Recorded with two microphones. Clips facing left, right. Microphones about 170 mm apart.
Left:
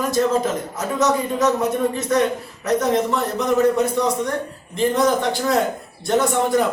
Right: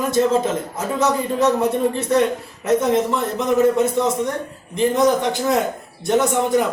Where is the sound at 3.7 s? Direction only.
25° right (ahead or behind).